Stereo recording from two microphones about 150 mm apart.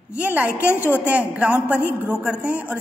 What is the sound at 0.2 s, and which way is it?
A man's voice, 10° right (ahead or behind).